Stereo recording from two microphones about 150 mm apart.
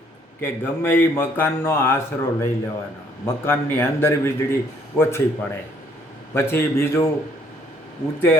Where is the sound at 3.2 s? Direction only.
15° left (ahead or behind).